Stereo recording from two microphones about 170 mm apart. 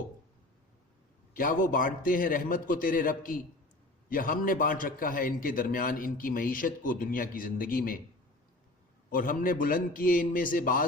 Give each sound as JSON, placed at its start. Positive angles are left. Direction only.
{"t": 1.3, "sound": "a man's voice", "side_deg": 55}
{"t": 9.1, "sound": "a man's voice", "side_deg": 55}